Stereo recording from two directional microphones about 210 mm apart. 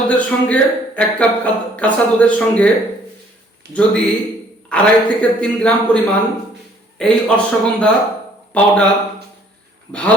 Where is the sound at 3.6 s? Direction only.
50° right (ahead or behind).